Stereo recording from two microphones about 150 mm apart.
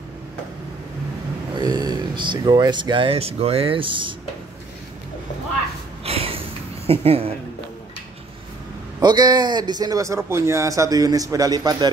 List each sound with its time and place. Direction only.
1.6 s speech: 25° right (ahead or behind)
6.0 s sniff: 40° right (ahead or behind)
6.9 s a woman's voice: 40° right (ahead or behind)
9.0 s a man's voice: 30° right (ahead or behind)